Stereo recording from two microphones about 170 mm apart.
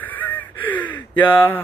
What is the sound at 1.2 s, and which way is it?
Speech, 10° left (ahead or behind).